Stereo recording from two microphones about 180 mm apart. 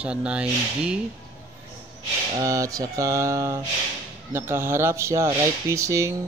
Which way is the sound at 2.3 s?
15° right (ahead or behind).